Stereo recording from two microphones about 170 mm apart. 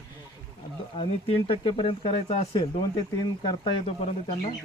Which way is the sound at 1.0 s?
35° left (ahead or behind).